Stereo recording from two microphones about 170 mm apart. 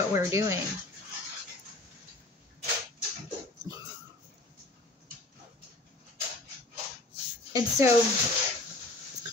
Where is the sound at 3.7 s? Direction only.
20° right (ahead or behind).